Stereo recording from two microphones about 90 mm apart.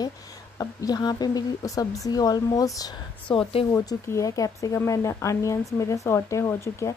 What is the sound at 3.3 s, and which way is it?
Speech, 75° left (ahead or behind).